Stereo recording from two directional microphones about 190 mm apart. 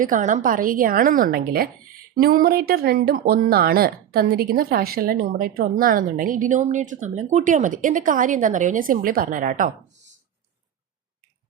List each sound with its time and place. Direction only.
0.0 s speech: 45° right (ahead or behind)